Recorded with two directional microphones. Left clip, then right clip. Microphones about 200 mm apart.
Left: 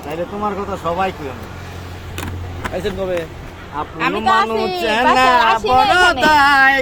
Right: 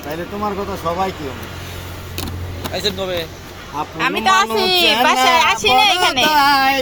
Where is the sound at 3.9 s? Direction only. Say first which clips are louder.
Even; centre (ahead or behind).